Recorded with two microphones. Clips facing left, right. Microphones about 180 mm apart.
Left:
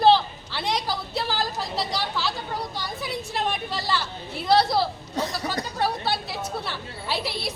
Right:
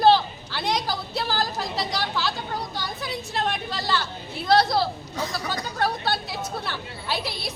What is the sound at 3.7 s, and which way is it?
Speech, 10° left (ahead or behind).